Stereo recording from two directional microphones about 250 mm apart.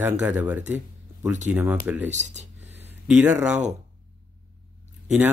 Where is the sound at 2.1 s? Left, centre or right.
Right.